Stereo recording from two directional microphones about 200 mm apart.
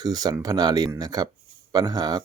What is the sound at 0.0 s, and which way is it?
Speech, 20° right (ahead or behind).